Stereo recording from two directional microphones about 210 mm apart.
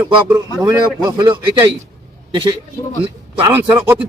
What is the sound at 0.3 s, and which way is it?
A man's voice, 10° right (ahead or behind).